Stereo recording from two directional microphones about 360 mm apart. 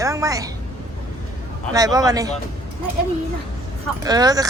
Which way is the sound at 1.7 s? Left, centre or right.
Centre.